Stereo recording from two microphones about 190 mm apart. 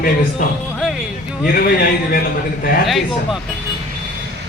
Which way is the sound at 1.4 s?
50° left (ahead or behind).